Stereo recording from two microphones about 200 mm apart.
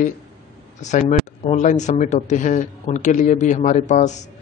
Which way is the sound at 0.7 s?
35° left (ahead or behind).